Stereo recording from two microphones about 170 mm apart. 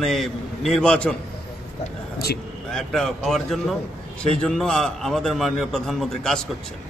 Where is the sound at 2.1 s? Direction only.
70° left (ahead or behind).